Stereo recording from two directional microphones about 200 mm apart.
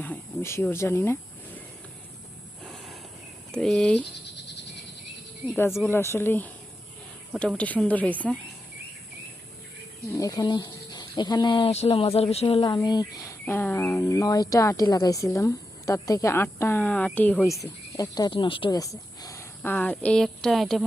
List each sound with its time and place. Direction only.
0.0 s speech: 10° left (ahead or behind)
3.5 s speech: 5° left (ahead or behind)
5.5 s a woman's voice: 10° left (ahead or behind)
10.2 s a woman's voice: 20° left (ahead or behind); by 20.8 s centre (ahead or behind)